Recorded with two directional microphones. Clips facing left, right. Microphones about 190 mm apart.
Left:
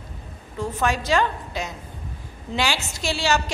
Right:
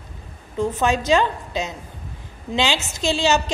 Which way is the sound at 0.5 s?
20° right (ahead or behind).